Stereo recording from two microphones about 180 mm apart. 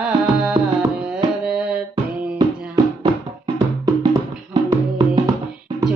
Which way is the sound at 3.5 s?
20° right (ahead or behind).